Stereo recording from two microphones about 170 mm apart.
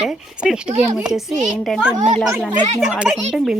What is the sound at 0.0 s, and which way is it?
Speech, 5° right (ahead or behind).